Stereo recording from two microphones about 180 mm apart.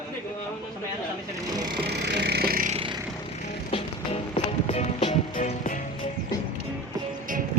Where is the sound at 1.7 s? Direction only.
65° right (ahead or behind).